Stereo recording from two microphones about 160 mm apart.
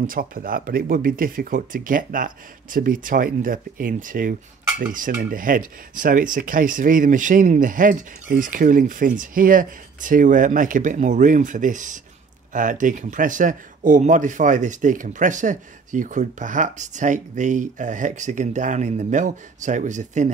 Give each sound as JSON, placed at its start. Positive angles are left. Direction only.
{"t": 0.0, "sound": "speech", "side_deg": -60}